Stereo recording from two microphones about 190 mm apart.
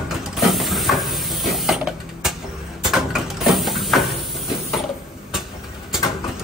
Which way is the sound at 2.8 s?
Centre (ahead or behind).